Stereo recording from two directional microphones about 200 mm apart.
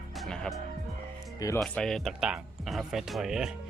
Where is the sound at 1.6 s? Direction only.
5° left (ahead or behind).